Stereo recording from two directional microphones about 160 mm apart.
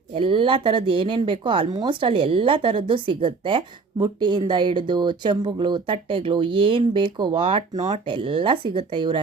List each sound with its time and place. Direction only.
0.1 s speech: 35° right (ahead or behind)